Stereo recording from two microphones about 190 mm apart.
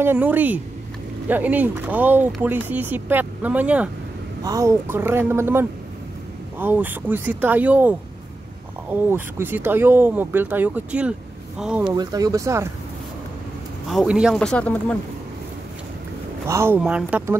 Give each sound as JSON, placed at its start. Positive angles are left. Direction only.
{"t": 0.0, "sound": "speech", "side_deg": -10}
{"t": 4.4, "sound": "speech", "side_deg": -20}
{"t": 8.9, "sound": "speech", "side_deg": -10}
{"t": 11.8, "sound": "speech", "side_deg": -20}
{"t": 13.8, "sound": "speech", "side_deg": 0}
{"t": 16.4, "sound": "speech", "side_deg": -15}